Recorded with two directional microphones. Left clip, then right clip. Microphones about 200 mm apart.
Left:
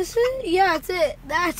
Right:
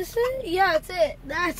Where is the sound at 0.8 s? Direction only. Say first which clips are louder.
Left 1 dB; 45° left (ahead or behind).